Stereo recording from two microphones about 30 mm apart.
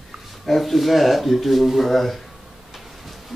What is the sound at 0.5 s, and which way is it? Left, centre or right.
Speech, centre.